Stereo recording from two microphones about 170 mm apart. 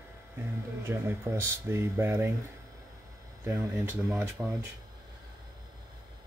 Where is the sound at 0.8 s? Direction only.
15° right (ahead or behind).